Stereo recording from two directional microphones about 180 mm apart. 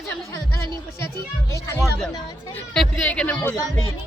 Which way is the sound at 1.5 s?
15° left (ahead or behind).